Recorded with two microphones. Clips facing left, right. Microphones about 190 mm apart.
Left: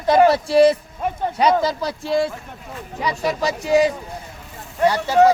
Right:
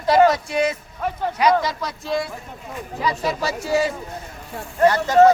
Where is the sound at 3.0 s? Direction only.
15° left (ahead or behind).